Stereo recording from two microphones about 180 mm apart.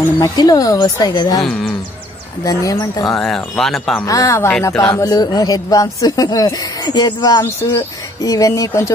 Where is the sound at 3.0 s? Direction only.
Centre (ahead or behind).